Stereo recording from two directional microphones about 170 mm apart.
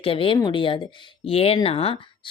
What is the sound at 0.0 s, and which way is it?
A woman's voice, 35° left (ahead or behind).